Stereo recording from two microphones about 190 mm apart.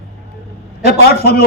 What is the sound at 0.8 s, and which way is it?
Speech, 55° left (ahead or behind).